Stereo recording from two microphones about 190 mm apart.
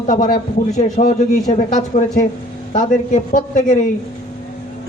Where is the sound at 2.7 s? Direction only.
45° left (ahead or behind).